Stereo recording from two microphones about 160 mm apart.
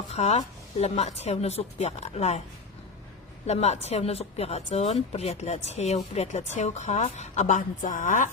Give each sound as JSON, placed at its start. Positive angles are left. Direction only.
{"t": 0.1, "sound": "speech", "side_deg": 45}
{"t": 3.4, "sound": "speech", "side_deg": 40}